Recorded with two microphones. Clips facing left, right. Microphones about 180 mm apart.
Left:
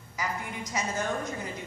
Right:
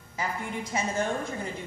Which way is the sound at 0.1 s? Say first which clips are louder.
Right 2 dB; 30° right (ahead or behind).